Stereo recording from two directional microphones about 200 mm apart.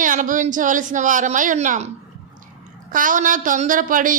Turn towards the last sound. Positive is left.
turn(degrees=-40)  # may be behind; listen again after turning